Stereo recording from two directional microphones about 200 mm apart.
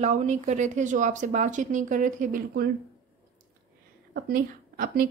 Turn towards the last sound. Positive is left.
turn(degrees=-45)  # may be behind; listen again after turning